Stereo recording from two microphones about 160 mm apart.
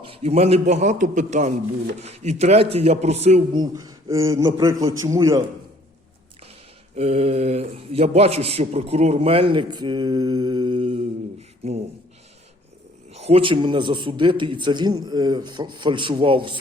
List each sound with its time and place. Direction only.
0.0 s a man's voice: 40° right (ahead or behind)
3.5 s a man's voice: 25° right (ahead or behind)
6.9 s a man's voice: 40° right (ahead or behind)
13.1 s a man's voice: 40° right (ahead or behind)